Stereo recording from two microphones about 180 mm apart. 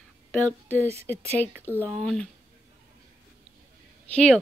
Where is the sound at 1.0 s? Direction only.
10° left (ahead or behind).